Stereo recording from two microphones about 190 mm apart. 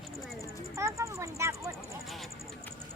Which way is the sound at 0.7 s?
15° right (ahead or behind).